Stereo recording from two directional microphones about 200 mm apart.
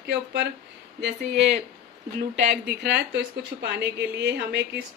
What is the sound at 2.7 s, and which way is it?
A woman's voice, 55° right (ahead or behind).